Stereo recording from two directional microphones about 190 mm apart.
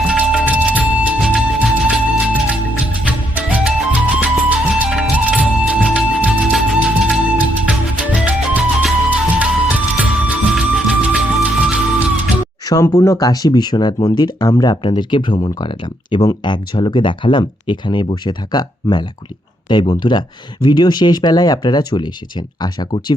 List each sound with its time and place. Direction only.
0.1 s music: 5° right (ahead or behind)
12.6 s a sound: 20° left (ahead or behind)
13.0 s speech: 15° left (ahead or behind)